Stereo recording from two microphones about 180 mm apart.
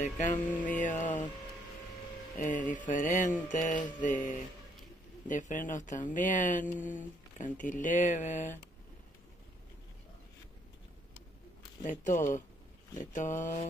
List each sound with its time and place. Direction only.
0.0 s a sound: 40° left (ahead or behind)
0.5 s mantra: 10° left (ahead or behind)
0.7 s speech: 45° left (ahead or behind)
2.3 s speech: 45° left (ahead or behind)
11.8 s speech: 45° left (ahead or behind)